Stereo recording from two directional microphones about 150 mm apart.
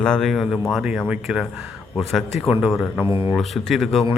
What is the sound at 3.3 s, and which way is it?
Speech, centre (ahead or behind).